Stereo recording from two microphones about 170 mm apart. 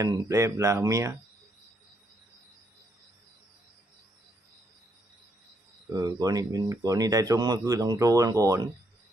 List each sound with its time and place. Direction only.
0.0 s speech: 20° right (ahead or behind)
5.9 s speech: 20° right (ahead or behind)